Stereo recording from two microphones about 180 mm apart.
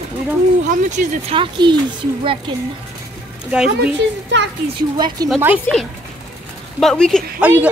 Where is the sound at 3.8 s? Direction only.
85° right.